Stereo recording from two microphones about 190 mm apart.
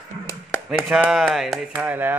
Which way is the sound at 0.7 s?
5° right (ahead or behind).